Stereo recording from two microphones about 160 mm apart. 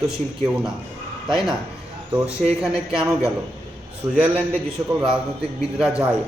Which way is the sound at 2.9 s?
Centre (ahead or behind).